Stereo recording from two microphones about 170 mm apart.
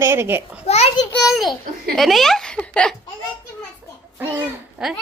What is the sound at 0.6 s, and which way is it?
Speech, 40° left (ahead or behind).